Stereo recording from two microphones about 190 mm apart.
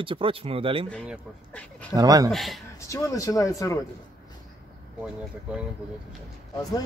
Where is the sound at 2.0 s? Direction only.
20° right (ahead or behind).